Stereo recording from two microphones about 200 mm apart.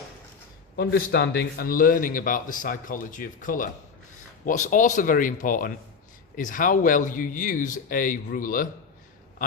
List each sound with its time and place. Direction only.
0.8 s a man's voice: 55° left (ahead or behind)